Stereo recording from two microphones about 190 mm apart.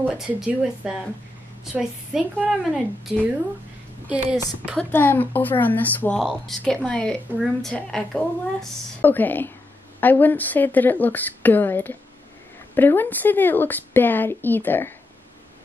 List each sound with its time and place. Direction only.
0.0 s a woman's voice: 5° right (ahead or behind)
4.7 s speech: 10° left (ahead or behind)